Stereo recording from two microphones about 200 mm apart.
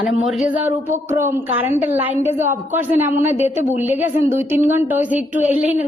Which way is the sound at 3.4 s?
35° left (ahead or behind).